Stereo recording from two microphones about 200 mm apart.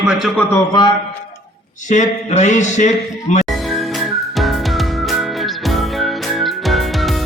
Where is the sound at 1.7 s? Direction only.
40° left (ahead or behind).